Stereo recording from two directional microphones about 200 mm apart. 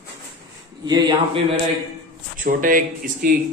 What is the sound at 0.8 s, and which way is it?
Speech, 20° right (ahead or behind).